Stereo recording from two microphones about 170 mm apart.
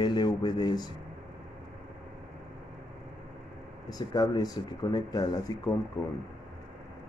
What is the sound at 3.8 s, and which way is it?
Speech, 20° left (ahead or behind).